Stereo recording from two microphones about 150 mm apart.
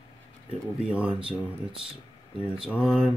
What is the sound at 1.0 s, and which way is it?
Speech, 40° right (ahead or behind).